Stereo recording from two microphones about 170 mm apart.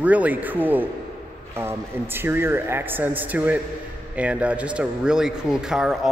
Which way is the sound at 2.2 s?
15° right (ahead or behind).